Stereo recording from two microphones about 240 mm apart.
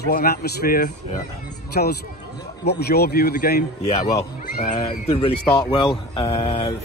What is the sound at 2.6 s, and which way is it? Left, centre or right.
A man's voice, left.